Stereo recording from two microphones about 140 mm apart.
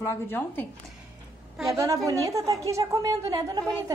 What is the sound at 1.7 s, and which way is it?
A woman's voice, 20° right (ahead or behind).